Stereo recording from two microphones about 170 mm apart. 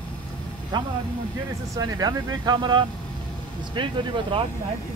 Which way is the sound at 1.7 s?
20° right (ahead or behind).